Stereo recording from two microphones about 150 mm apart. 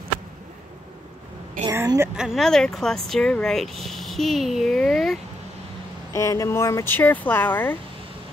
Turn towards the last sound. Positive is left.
turn(degrees=15)  # may be behind; listen again after turning